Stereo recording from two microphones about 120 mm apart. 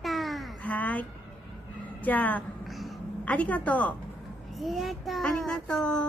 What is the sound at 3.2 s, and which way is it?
Speech, 10° left (ahead or behind).